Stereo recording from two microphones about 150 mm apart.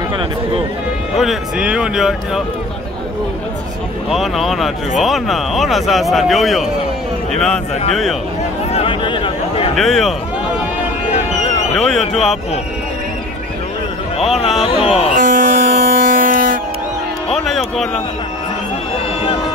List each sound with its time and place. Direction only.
1.1 s speech: centre (ahead or behind)
4.1 s speech: centre (ahead or behind)
8.7 s a sound: 35° left (ahead or behind)
9.8 s speech: centre (ahead or behind)
11.7 s speech: 5° left (ahead or behind)
14.1 s speech: 40° left (ahead or behind)
14.9 s buzz: 40° left (ahead or behind)
15.1 s a sound: 65° right (ahead or behind)
17.5 s speech: centre (ahead or behind)